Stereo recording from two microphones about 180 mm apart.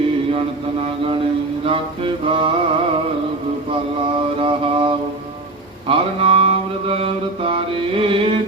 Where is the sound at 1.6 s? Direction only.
30° right (ahead or behind).